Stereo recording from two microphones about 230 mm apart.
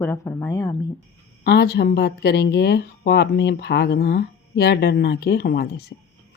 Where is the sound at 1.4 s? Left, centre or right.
Left.